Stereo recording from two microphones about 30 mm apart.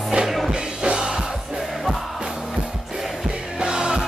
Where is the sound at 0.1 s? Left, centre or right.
Right.